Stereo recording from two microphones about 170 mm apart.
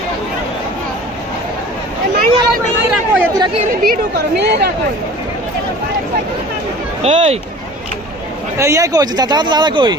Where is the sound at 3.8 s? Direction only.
85° right.